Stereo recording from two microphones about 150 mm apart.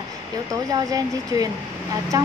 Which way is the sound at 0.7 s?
25° right (ahead or behind).